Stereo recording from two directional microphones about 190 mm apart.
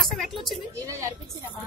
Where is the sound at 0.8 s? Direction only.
15° right (ahead or behind).